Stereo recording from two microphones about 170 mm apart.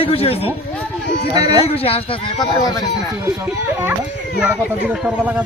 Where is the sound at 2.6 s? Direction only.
20° left (ahead or behind).